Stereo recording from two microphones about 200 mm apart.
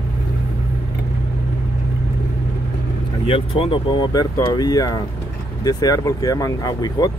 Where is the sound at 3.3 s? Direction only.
25° left (ahead or behind).